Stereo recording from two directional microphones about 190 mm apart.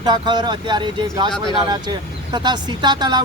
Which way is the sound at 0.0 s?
20° right (ahead or behind).